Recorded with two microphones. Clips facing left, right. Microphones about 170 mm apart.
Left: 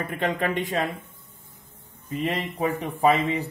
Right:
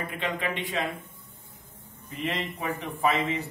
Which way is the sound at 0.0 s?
45° left (ahead or behind).